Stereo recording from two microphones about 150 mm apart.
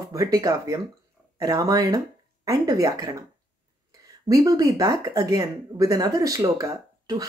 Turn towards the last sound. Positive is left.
turn(degrees=-25)  # may be behind; listen again after turning